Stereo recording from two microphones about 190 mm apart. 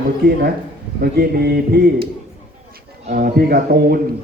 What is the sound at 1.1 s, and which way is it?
Speech, 55° right (ahead or behind).